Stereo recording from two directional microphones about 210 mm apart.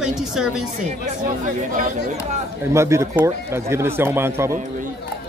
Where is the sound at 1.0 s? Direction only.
40° right (ahead or behind).